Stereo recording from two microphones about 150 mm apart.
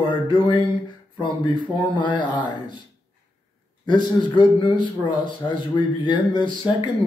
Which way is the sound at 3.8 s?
30° left (ahead or behind).